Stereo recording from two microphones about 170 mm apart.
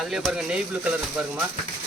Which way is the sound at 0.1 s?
Centre (ahead or behind).